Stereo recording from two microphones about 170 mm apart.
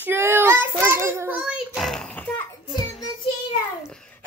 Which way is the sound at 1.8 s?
5° left (ahead or behind).